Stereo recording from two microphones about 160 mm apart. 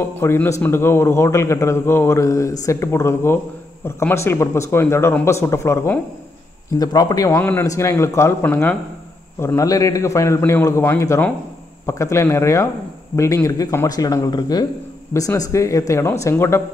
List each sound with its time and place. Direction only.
0.2 s a man's voice: 15° left (ahead or behind)